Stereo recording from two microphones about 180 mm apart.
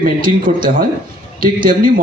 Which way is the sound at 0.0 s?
50° right (ahead or behind).